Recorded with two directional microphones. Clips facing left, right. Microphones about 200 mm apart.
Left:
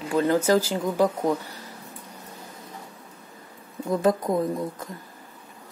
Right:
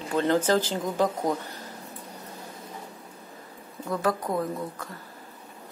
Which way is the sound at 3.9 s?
20° left (ahead or behind).